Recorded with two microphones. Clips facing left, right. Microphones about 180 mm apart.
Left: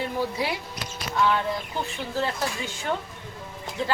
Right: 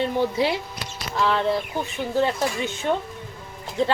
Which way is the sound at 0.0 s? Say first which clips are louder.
Right 6 dB; 25° right (ahead or behind).